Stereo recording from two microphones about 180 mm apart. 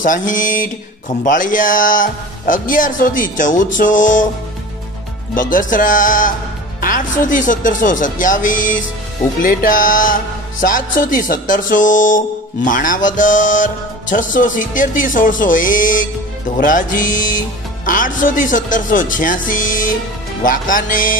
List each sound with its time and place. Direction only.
0.0 s music: 45° left (ahead or behind)
5.3 s music: 50° left (ahead or behind)